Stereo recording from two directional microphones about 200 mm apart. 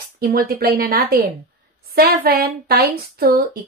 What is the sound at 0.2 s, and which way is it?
A woman's voice, 50° right (ahead or behind).